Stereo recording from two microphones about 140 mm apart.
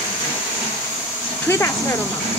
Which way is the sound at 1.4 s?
20° left (ahead or behind).